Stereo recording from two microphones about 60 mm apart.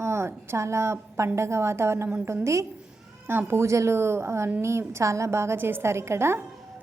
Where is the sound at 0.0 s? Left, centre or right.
Right.